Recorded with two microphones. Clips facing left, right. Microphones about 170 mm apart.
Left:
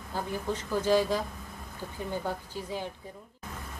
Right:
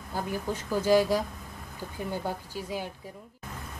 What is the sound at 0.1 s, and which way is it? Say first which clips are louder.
A woman's voice: right 1 dB; 10° right (ahead or behind).